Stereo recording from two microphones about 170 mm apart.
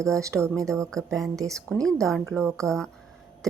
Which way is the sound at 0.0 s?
20° right (ahead or behind).